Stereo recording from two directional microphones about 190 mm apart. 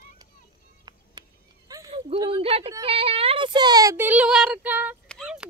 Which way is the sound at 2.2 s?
25° right (ahead or behind).